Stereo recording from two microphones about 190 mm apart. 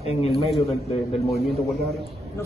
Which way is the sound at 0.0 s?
30° left (ahead or behind).